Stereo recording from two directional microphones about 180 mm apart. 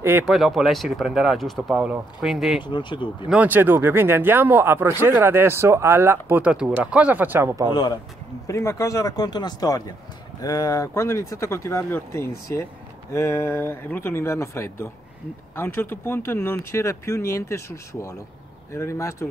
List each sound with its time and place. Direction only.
0.0 s speech: 10° right (ahead or behind)
0.3 s speech: centre (ahead or behind)
2.6 s speech: 25° left (ahead or behind)
3.3 s speech: 10° right (ahead or behind)
7.7 s speech: 25° left (ahead or behind)